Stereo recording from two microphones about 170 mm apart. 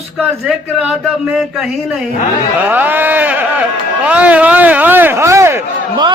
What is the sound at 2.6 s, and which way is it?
A man's voice, 10° right (ahead or behind).